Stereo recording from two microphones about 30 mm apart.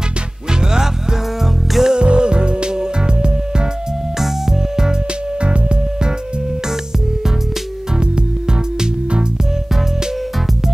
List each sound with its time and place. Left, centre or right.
0.5 s music: right
1.4 s music: centre
2.0 s music: right
4.2 s music: centre
8.0 s music: right